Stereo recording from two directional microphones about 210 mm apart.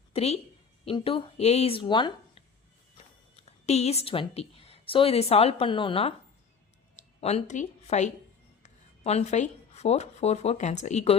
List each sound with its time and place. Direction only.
0.1 s a woman's voice: 30° left (ahead or behind)
3.4 s a woman's voice: 30° left (ahead or behind)